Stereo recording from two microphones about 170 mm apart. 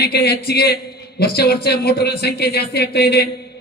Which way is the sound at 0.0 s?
65° left (ahead or behind).